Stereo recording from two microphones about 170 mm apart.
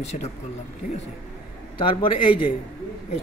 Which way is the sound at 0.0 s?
40° left (ahead or behind).